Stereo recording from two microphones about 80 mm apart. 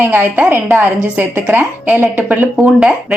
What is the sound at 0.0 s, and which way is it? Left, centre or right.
A woman's voice, right.